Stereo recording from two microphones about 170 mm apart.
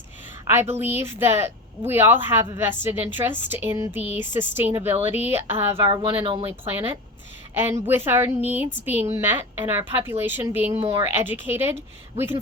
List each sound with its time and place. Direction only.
0.4 s a woman's voice: 15° right (ahead or behind)
5.8 s speech: 30° right (ahead or behind)
7.5 s a woman's voice: 15° right (ahead or behind)
10.7 s speech: 35° right (ahead or behind)
11.0 s a woman's voice: 15° right (ahead or behind)